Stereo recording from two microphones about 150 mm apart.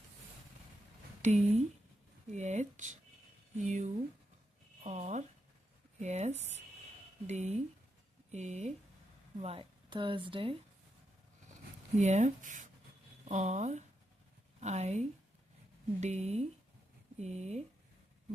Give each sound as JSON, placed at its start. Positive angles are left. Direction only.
{"t": 1.2, "sound": "speech", "side_deg": -50}
{"t": 9.4, "sound": "speech", "side_deg": -40}
{"t": 11.9, "sound": "speech", "side_deg": -50}